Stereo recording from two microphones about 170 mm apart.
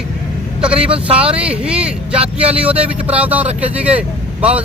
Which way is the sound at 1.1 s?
5° right (ahead or behind).